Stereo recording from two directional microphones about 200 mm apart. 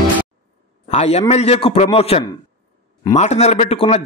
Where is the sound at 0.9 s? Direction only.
30° left (ahead or behind).